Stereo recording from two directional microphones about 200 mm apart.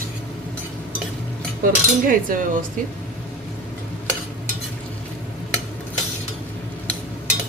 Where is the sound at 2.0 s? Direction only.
45° right (ahead or behind).